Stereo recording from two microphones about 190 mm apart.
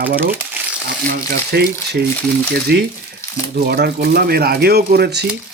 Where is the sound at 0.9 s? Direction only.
55° right (ahead or behind).